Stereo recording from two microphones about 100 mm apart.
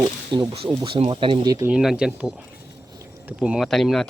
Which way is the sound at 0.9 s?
70° right (ahead or behind).